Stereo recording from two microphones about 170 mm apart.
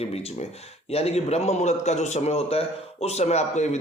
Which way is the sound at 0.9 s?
35° left (ahead or behind).